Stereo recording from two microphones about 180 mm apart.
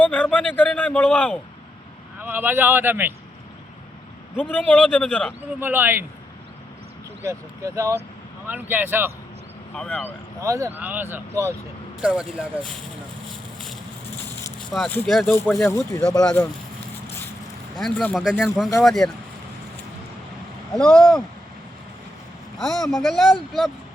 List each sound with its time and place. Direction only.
0.0 s a sound: 10° left (ahead or behind)
2.1 s speech: 10° right (ahead or behind)
4.4 s speech: 10° left (ahead or behind)
5.5 s speech: 10° right (ahead or behind)
7.2 s speech: 15° right (ahead or behind)
9.7 s speech: 10° left (ahead or behind)
10.4 s speech: 15° right (ahead or behind)
14.7 s speech: 5° left (ahead or behind)
15.6 s speech: 20° left (ahead or behind)
16.2 s speech: 5° left (ahead or behind)
17.7 s speech: 5° left (ahead or behind)
18.2 s speech: 5° right (ahead or behind)
20.7 s speech: 5° left (ahead or behind)
22.5 s speech: centre (ahead or behind)